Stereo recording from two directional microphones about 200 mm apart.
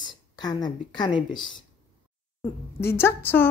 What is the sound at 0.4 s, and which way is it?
A woman's voice, 20° left (ahead or behind).